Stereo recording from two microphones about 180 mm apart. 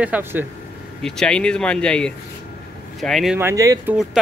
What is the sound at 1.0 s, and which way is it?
Speech, 5° left (ahead or behind).